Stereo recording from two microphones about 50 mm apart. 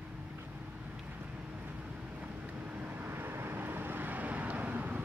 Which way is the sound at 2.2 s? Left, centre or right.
Right.